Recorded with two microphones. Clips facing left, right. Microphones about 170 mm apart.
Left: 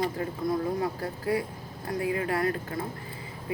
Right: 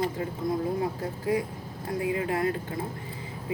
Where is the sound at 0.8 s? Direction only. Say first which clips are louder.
Right 1 dB; 20° right (ahead or behind).